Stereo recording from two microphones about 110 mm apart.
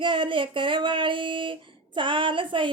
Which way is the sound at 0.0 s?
50° right (ahead or behind).